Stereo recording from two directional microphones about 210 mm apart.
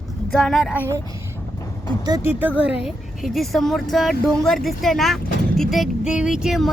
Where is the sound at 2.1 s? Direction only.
10° right (ahead or behind).